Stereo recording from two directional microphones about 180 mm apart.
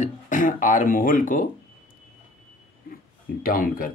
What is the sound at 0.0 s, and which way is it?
Speech, 45° left (ahead or behind).